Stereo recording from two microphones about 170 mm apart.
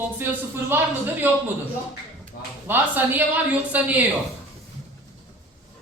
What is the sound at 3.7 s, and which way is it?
Speech, 10° right (ahead or behind).